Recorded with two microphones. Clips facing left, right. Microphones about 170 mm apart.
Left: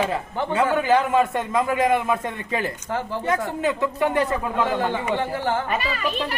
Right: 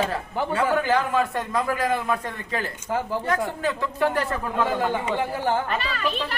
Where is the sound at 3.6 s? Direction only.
20° left (ahead or behind).